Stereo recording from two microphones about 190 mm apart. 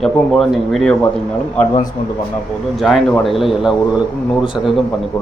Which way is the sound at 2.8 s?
Centre (ahead or behind).